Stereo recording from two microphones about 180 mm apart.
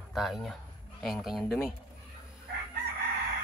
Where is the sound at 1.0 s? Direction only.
Centre (ahead or behind).